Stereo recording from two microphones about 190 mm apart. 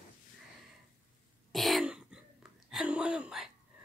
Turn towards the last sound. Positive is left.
turn(degrees=-5)  # may be behind; listen again after turning